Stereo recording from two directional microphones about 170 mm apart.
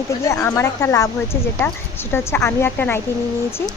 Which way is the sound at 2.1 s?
15° left (ahead or behind).